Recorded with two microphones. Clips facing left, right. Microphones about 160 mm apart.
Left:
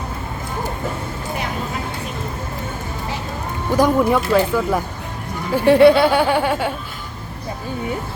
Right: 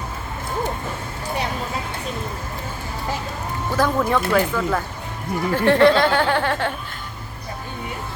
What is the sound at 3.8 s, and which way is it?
Speech, 10° left (ahead or behind).